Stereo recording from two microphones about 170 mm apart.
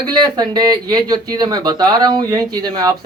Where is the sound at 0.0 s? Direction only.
25° right (ahead or behind).